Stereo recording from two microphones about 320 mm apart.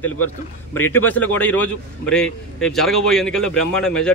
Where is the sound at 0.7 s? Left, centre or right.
Centre.